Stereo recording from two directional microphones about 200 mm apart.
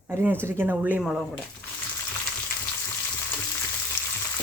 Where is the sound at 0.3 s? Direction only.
5° right (ahead or behind).